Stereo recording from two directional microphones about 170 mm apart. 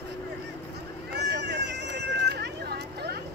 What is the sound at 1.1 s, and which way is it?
Vehicle, 85° right.